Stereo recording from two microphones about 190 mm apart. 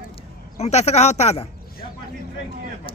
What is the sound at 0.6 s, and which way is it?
Speech, 35° left (ahead or behind).